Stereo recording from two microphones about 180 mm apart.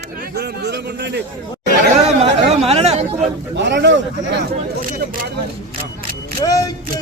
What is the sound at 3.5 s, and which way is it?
Speech, 75° right (ahead or behind).